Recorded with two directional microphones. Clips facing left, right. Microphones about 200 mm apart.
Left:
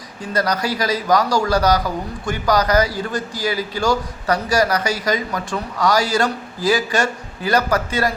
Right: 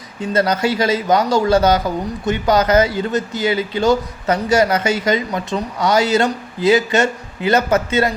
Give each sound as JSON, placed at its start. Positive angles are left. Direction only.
{"t": 0.2, "sound": "speech", "side_deg": -25}